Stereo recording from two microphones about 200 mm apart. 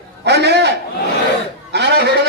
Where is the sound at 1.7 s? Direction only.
55° right (ahead or behind).